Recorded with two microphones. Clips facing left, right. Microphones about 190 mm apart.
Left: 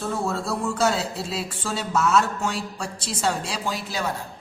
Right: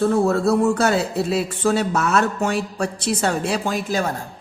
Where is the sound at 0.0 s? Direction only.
60° right (ahead or behind).